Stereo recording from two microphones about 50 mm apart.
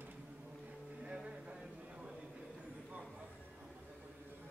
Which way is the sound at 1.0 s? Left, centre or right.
Centre.